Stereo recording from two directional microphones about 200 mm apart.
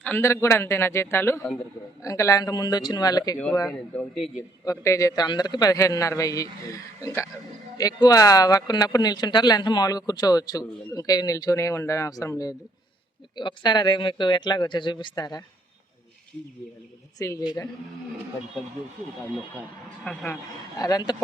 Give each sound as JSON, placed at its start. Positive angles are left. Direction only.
{"t": 0.0, "sound": "a man's voice", "side_deg": 10}
{"t": 3.3, "sound": "a man's voice", "side_deg": 5}
{"t": 4.6, "sound": "a man's voice", "side_deg": 15}
{"t": 17.2, "sound": "a man's voice", "side_deg": 15}
{"t": 20.1, "sound": "a man's voice", "side_deg": 5}
{"t": 20.7, "sound": "speech", "side_deg": 20}